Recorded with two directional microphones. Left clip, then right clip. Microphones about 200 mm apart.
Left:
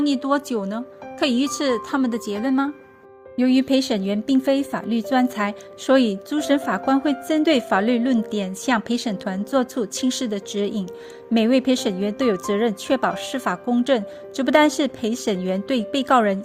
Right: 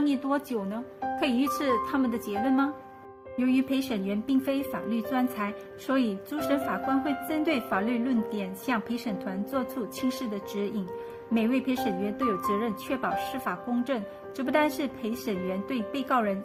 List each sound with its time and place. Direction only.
0.0 s a woman's voice: 35° left (ahead or behind)